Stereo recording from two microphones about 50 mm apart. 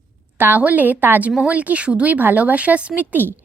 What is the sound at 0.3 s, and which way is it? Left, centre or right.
A woman's voice, right.